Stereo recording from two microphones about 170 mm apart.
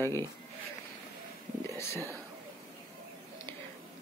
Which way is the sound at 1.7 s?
15° left (ahead or behind).